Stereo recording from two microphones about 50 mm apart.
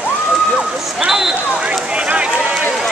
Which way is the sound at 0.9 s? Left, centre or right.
Centre.